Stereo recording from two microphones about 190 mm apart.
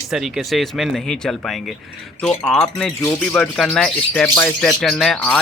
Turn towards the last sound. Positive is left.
turn(degrees=5)  # may be behind; listen again after turning